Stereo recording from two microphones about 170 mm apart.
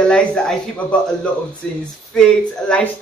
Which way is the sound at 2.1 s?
5° left (ahead or behind).